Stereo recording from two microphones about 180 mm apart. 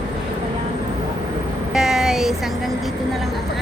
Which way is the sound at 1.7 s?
5° right (ahead or behind).